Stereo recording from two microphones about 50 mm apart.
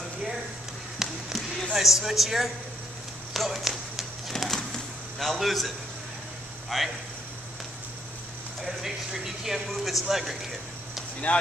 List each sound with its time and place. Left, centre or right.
1.0 s basketball bounce: centre
1.7 s a man's voice: centre
3.3 s a sound: centre
6.7 s a man's voice: centre
8.6 s speech: centre
11.3 s speech: left